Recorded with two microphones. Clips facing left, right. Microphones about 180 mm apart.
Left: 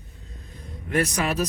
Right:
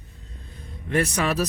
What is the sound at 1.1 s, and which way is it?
Speech, 30° right (ahead or behind).